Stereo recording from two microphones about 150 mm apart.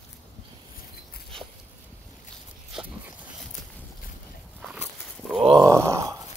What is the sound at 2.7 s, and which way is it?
Dog, 5° right (ahead or behind).